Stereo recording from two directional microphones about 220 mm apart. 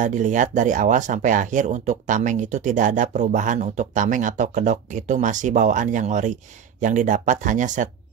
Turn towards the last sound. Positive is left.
turn(degrees=-35)  # may be behind; listen again after turning